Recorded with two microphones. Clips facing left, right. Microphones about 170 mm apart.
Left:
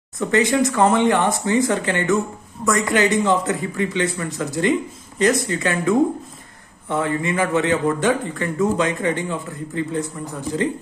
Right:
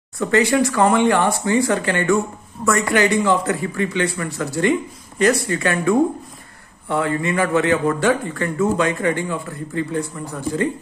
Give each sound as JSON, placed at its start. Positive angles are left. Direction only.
{"t": 0.2, "sound": "a man's voice", "side_deg": 20}